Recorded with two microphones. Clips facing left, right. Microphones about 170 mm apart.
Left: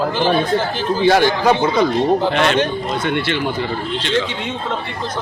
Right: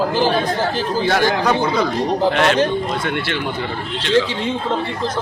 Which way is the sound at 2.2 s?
5° right (ahead or behind).